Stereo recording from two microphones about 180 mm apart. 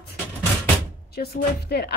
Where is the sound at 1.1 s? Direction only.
60° left (ahead or behind).